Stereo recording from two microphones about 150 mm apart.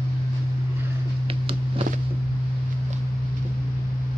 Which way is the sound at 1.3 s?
40° right (ahead or behind).